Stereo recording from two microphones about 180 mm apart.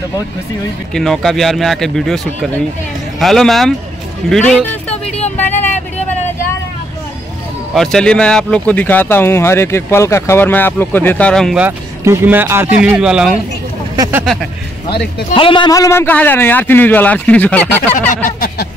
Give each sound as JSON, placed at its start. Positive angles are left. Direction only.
{"t": 0.9, "sound": "speech", "side_deg": 5}
{"t": 5.0, "sound": "vehicle", "side_deg": 35}
{"t": 5.4, "sound": "vehicle", "side_deg": 10}
{"t": 7.7, "sound": "speech", "side_deg": 0}
{"t": 11.6, "sound": "speech", "side_deg": -15}
{"t": 13.9, "sound": "speech", "side_deg": -20}
{"t": 14.2, "sound": "speech", "side_deg": 0}
{"t": 15.3, "sound": "speech", "side_deg": 30}
{"t": 18.1, "sound": "a sound", "side_deg": 50}